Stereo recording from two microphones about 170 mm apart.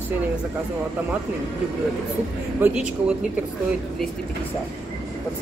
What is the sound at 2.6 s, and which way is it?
Speech, 5° right (ahead or behind).